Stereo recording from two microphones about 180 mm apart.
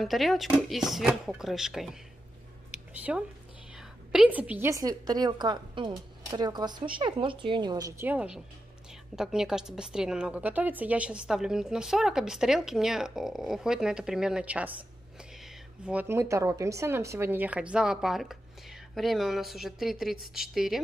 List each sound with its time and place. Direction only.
0.0 s a woman's voice: centre (ahead or behind)
2.7 s a sound: 5° right (ahead or behind)
3.7 s a woman's voice: 5° right (ahead or behind)
8.1 s a woman's voice: 5° right (ahead or behind)